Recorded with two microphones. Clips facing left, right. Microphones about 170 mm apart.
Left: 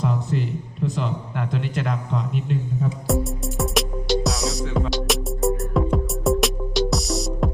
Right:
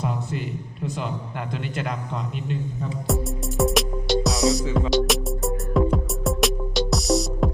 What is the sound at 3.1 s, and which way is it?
Music, centre (ahead or behind).